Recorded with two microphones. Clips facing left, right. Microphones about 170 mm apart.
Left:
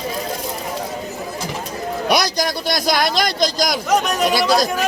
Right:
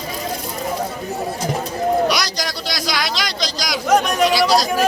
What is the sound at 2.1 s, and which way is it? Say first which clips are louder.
A man's voice: left 4 dB; 55° left (ahead or behind).